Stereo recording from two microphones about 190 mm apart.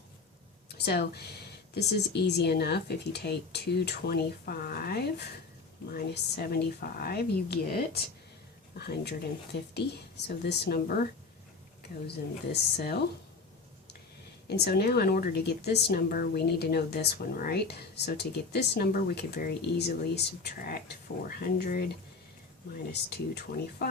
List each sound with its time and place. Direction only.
0.9 s a woman's voice: 60° left (ahead or behind)
14.5 s a woman's voice: 55° left (ahead or behind)
22.9 s a woman's voice: 60° left (ahead or behind)